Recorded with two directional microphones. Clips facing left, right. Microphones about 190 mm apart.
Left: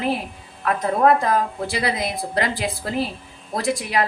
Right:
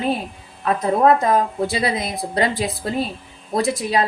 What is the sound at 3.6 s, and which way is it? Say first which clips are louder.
Speech: right 3 dB; 25° right (ahead or behind).